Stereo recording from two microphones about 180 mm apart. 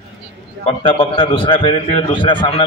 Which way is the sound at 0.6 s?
30° left (ahead or behind).